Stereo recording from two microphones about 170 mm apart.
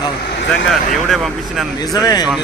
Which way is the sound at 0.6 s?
Centre (ahead or behind).